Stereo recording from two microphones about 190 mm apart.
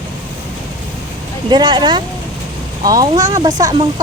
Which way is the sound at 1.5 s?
25° right (ahead or behind).